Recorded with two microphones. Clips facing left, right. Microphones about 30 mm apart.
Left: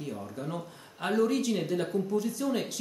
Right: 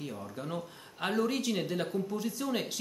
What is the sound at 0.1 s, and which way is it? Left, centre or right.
Speech, centre.